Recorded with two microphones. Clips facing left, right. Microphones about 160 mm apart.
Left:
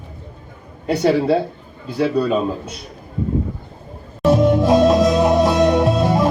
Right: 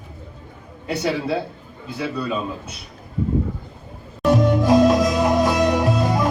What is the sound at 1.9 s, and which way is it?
Speech, 45° left (ahead or behind).